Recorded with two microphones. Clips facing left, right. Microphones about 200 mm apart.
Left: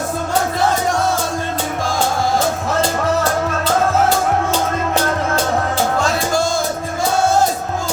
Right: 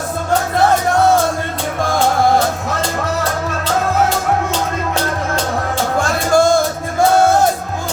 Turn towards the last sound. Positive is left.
turn(degrees=-55)  # may be behind; listen again after turning